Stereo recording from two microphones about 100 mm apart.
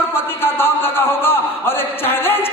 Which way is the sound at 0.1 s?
20° left (ahead or behind).